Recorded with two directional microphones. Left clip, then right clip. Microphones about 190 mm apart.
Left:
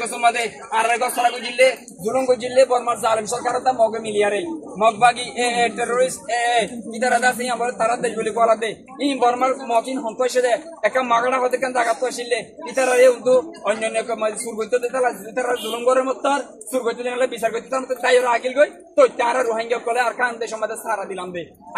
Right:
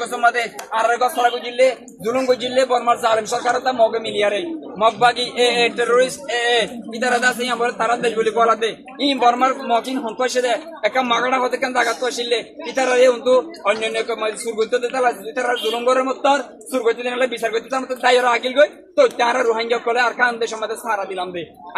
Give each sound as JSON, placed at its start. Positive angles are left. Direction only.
{"t": 2.1, "sound": "a man's voice", "side_deg": 0}